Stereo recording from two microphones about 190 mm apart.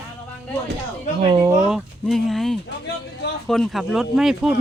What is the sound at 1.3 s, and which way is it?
Speech, 20° right (ahead or behind).